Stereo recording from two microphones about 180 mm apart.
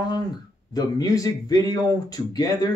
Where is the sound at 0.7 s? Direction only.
20° left (ahead or behind).